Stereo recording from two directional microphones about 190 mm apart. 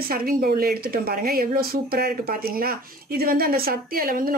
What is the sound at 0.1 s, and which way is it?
Speech, 50° right (ahead or behind).